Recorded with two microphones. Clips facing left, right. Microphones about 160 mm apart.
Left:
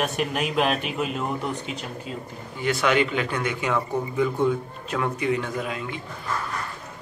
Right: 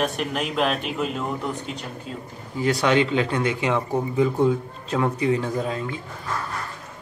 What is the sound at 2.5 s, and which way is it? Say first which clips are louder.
Speech: right 2 dB; 30° right (ahead or behind).